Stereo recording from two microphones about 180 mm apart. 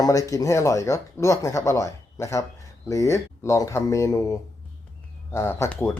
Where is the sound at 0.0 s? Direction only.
20° left (ahead or behind).